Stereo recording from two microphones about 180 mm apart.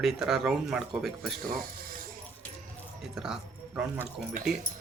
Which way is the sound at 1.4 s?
55° right (ahead or behind).